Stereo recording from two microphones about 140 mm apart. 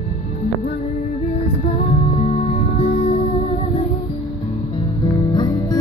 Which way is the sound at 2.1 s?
55° left (ahead or behind).